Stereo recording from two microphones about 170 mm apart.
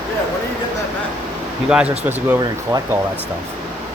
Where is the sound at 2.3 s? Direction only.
20° right (ahead or behind).